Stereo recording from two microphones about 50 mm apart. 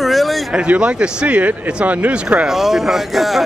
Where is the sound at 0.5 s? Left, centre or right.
Right.